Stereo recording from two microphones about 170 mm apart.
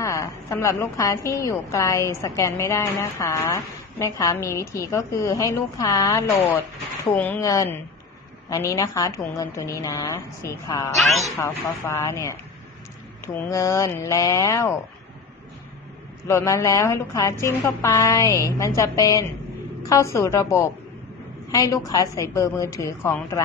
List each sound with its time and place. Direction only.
0.0 s a woman's voice: 15° left (ahead or behind)
11.3 s a woman's voice: 15° left (ahead or behind)
16.3 s a woman's voice: 15° left (ahead or behind)